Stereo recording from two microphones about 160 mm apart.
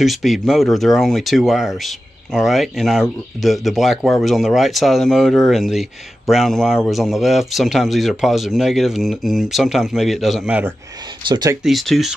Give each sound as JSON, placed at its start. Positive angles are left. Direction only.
{"t": 0.0, "sound": "speech", "side_deg": 0}
{"t": 11.2, "sound": "speech", "side_deg": -25}
{"t": 11.6, "sound": "speech", "side_deg": 0}